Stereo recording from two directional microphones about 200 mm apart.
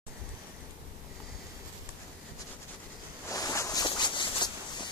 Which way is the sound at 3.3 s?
15° left (ahead or behind).